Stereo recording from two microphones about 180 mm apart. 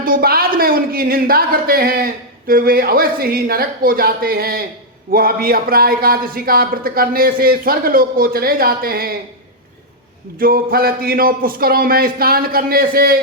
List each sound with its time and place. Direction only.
0.0 s a man's voice: 55° right (ahead or behind)
10.3 s a man's voice: 55° right (ahead or behind)